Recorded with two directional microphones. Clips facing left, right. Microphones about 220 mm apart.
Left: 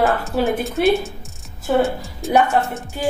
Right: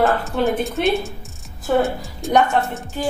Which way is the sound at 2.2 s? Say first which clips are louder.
Even; centre (ahead or behind).